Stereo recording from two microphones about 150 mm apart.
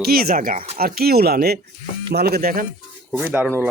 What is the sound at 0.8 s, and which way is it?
Speech, 90° right.